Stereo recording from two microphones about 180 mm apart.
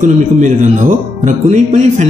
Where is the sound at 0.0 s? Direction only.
45° right (ahead or behind).